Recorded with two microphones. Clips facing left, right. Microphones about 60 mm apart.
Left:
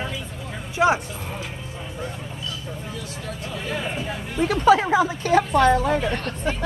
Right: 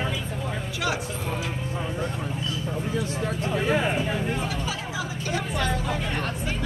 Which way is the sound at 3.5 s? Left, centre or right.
Right.